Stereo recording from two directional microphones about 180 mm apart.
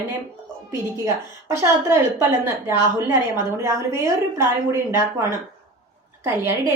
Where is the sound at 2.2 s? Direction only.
15° right (ahead or behind).